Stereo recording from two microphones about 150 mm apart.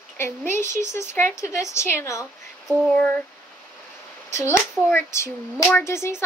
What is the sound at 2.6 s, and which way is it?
Child singing, centre (ahead or behind).